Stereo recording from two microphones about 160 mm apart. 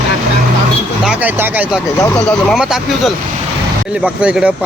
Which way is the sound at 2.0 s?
20° left (ahead or behind).